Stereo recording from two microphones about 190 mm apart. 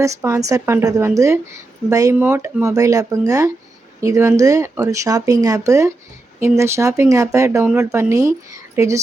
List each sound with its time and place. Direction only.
0.0 s a woman's voice: 15° right (ahead or behind)